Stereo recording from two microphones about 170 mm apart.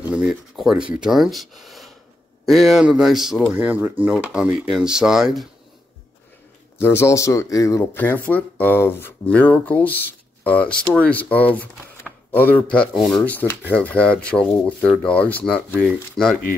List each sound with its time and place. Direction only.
0.1 s speech: 5° right (ahead or behind)
6.8 s speech: 15° left (ahead or behind)